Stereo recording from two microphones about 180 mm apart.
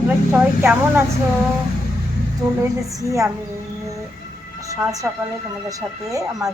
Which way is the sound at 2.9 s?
20° right (ahead or behind).